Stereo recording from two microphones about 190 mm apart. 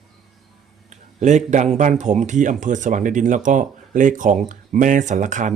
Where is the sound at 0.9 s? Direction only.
40° right (ahead or behind).